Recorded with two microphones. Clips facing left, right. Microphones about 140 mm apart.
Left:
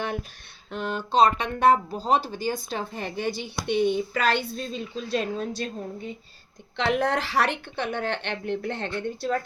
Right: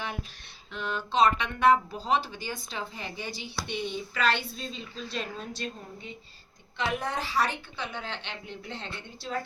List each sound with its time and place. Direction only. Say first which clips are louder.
0.0 s a sound: left 6 dB; 50° left (ahead or behind)
0.7 s speech: left 5 dB; 45° left (ahead or behind)
6.7 s a woman's voice: left 7 dB; 75° left (ahead or behind); by 9.4 s 55° left (ahead or behind)